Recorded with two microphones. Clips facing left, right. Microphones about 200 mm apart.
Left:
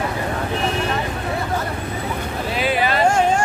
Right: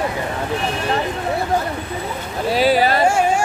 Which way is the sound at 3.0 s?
10° right (ahead or behind).